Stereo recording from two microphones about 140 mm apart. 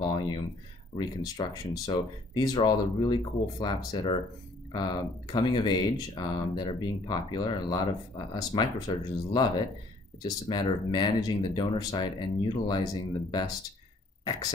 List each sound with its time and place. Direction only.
0.0 s a sound: 30° left (ahead or behind)
0.9 s speech: 30° left (ahead or behind)
5.3 s speech: 35° left (ahead or behind)